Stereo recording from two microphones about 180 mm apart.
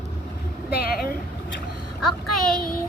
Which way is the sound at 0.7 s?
60° left (ahead or behind).